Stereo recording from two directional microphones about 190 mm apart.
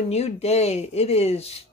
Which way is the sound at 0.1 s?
35° left (ahead or behind).